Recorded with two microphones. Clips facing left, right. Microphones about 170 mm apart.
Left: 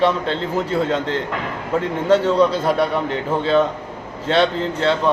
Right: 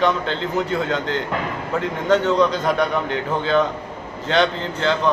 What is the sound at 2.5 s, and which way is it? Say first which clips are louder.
Speech: left 2 dB; 30° left (ahead or behind).